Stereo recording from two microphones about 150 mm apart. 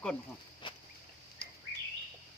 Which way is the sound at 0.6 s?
35° left (ahead or behind).